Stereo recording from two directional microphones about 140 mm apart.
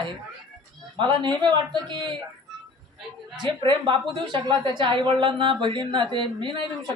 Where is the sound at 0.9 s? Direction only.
30° right (ahead or behind).